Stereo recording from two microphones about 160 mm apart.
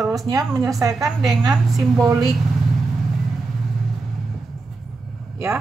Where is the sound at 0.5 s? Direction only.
20° right (ahead or behind).